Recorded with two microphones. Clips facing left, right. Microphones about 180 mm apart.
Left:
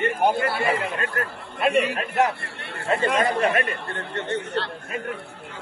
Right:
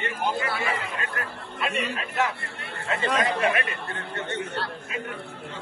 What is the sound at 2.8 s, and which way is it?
Speech, 35° left (ahead or behind).